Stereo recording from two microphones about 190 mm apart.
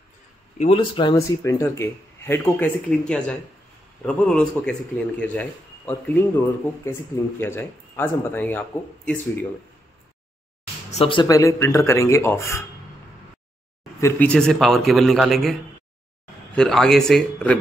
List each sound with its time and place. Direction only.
0.6 s speech: 25° left (ahead or behind)
1.4 s a man's voice: 15° left (ahead or behind)
10.9 s speech: 30° left (ahead or behind); by 12.6 s 15° left (ahead or behind)
14.0 s a man's voice: 5° left (ahead or behind)
16.5 s a man's voice: centre (ahead or behind)